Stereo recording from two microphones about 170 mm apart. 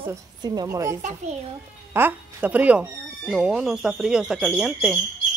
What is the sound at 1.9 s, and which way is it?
Speech, 10° right (ahead or behind).